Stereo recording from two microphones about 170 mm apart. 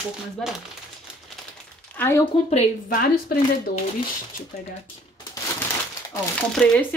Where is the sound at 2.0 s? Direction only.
15° left (ahead or behind).